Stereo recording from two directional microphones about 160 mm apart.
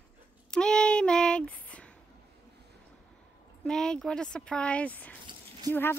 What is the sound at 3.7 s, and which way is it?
A woman's voice, 5° left (ahead or behind).